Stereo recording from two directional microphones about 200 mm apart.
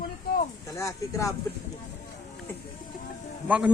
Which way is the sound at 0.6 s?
15° left (ahead or behind).